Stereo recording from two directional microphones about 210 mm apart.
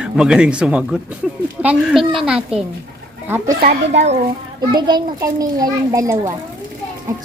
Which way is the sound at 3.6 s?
50° right (ahead or behind).